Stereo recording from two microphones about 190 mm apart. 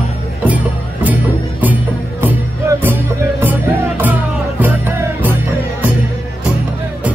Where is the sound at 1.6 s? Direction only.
10° right (ahead or behind).